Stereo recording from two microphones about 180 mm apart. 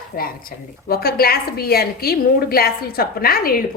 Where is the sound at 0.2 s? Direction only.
55° left (ahead or behind).